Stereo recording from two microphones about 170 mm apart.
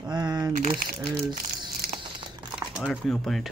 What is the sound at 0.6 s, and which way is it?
Speech, 55° right (ahead or behind).